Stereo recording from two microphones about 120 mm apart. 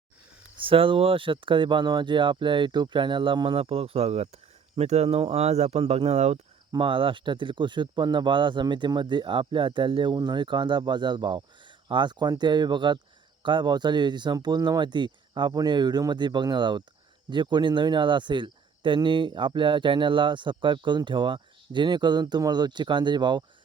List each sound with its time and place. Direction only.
0.6 s speech: 50° right (ahead or behind); by 5.0 s 65° right (ahead or behind)
5.0 s speech: 55° right (ahead or behind)
6.7 s speech: 45° right (ahead or behind)